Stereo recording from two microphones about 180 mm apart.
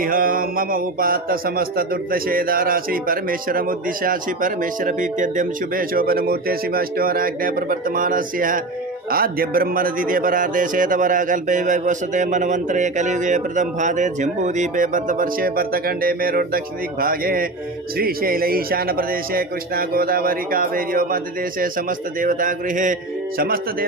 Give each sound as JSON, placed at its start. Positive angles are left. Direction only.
{"t": 0.0, "sound": "a man's voice", "side_deg": -50}